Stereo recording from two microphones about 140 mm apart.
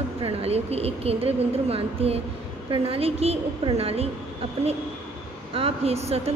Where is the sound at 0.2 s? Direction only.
45° right (ahead or behind).